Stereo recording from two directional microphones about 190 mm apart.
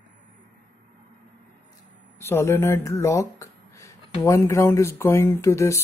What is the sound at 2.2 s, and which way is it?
Speech, 15° left (ahead or behind).